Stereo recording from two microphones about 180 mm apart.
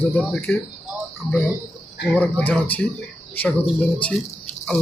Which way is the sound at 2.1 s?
10° left (ahead or behind).